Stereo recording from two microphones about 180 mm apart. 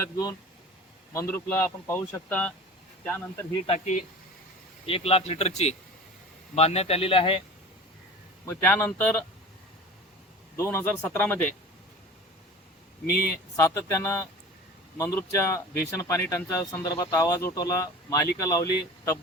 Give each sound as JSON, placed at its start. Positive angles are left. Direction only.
{"t": 0.0, "sound": "a man's voice", "side_deg": 20}
{"t": 3.7, "sound": "speech", "side_deg": 40}
{"t": 8.4, "sound": "a man's voice", "side_deg": 10}
{"t": 10.6, "sound": "a man's voice", "side_deg": 15}
{"t": 13.3, "sound": "a man's voice", "side_deg": 15}